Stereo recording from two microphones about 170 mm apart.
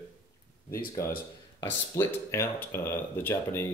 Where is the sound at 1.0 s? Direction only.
15° left (ahead or behind).